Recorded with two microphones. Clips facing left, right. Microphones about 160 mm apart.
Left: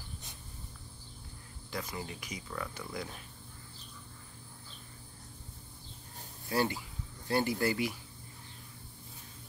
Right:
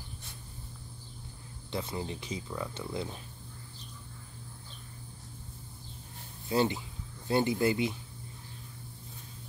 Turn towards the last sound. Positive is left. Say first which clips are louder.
# right 3 dB
turn(degrees=-20)  # may be behind; listen again after turning